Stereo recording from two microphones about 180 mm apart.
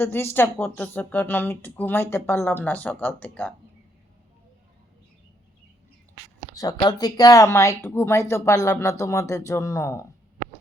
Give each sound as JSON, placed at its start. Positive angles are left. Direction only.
{"t": 0.0, "sound": "speech", "side_deg": 10}
{"t": 6.5, "sound": "speech", "side_deg": 20}